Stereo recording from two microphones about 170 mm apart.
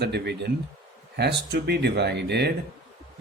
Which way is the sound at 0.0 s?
80° right.